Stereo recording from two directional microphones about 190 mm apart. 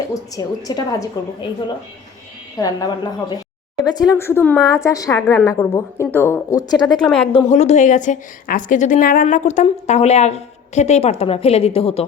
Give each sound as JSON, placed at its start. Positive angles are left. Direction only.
{"t": 0.1, "sound": "a woman's voice", "side_deg": 20}
{"t": 7.0, "sound": "speech", "side_deg": 5}
{"t": 7.3, "sound": "a woman's voice", "side_deg": 35}